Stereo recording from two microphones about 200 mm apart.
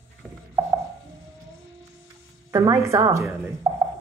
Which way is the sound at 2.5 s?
15° right (ahead or behind).